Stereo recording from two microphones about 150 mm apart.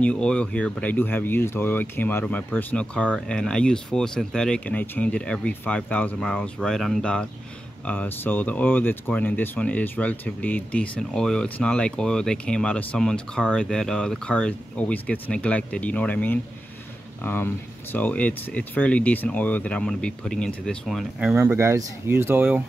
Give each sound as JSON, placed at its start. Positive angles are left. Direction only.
{"t": 0.0, "sound": "speech", "side_deg": 5}
{"t": 21.4, "sound": "speech", "side_deg": -20}